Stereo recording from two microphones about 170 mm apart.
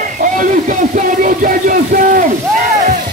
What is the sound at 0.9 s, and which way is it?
Speech, 50° right (ahead or behind).